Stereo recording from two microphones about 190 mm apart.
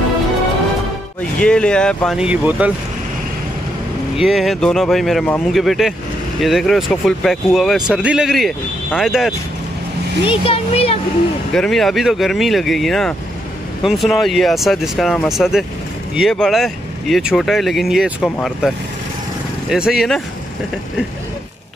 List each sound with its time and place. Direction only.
1.4 s speech: 5° left (ahead or behind)
4.2 s speech: centre (ahead or behind)
10.2 s speech: 30° left (ahead or behind)
11.5 s speech: centre (ahead or behind)
19.7 s speech: 5° right (ahead or behind)